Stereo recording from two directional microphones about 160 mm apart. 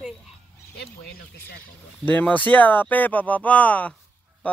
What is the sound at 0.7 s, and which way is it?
Speech, 80° left.